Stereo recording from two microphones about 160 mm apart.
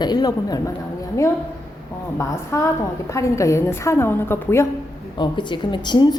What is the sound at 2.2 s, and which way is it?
A woman's voice, 20° left (ahead or behind).